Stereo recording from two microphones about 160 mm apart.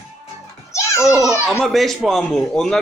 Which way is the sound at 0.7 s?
20° left (ahead or behind).